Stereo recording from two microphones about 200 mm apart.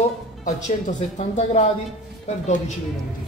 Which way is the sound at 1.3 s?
35° left (ahead or behind).